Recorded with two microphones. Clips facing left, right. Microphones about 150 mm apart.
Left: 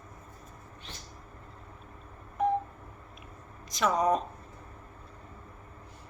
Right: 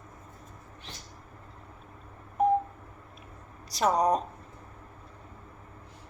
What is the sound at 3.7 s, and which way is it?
Speech, 35° right (ahead or behind).